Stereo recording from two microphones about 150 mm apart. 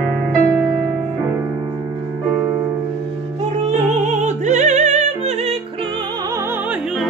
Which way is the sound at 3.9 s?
50° right (ahead or behind).